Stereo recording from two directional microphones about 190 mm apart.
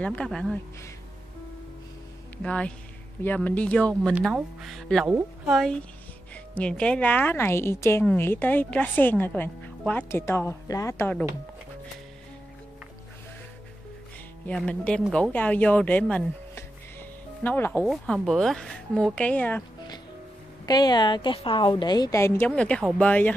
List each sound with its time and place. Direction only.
0.0 s speech: 5° left (ahead or behind)
2.3 s a woman's voice: 5° left (ahead or behind)
14.4 s a woman's voice: 5° left (ahead or behind)
20.6 s a woman's voice: 20° left (ahead or behind)